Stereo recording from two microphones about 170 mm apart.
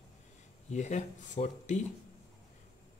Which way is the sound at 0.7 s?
45° left (ahead or behind).